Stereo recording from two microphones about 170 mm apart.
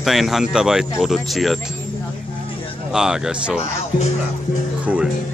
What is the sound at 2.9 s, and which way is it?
Speech, 5° right (ahead or behind).